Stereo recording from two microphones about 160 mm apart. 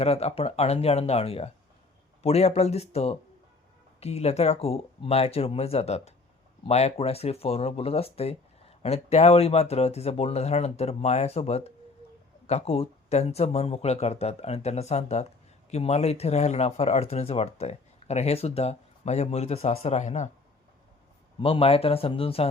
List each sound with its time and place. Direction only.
0.0 s speech: 40° left (ahead or behind)
21.4 s speech: 35° left (ahead or behind)